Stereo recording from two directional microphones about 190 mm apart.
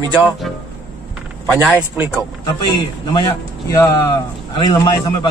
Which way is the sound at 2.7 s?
20° left (ahead or behind).